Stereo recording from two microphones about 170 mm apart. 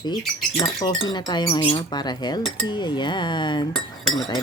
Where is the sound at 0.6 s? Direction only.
25° left (ahead or behind).